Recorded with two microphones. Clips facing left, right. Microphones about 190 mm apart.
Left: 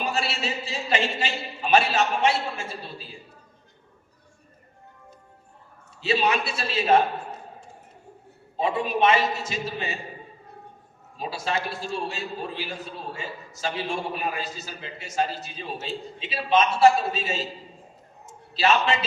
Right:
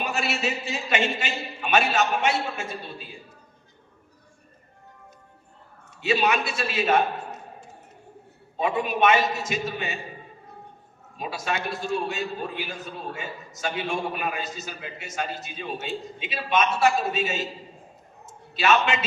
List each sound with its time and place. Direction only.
0.0 s a man's voice: 30° left (ahead or behind)
5.9 s a man's voice: 30° left (ahead or behind)
8.5 s a man's voice: 30° left (ahead or behind)
11.2 s a man's voice: 30° left (ahead or behind)
18.5 s a man's voice: 30° left (ahead or behind)